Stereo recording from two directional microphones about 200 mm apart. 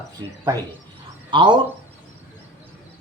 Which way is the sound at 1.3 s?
25° right (ahead or behind).